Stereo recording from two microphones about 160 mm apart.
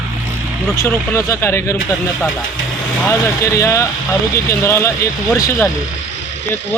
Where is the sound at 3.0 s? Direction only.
15° left (ahead or behind).